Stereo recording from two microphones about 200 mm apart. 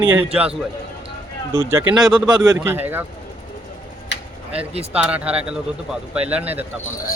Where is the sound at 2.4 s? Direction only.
20° right (ahead or behind).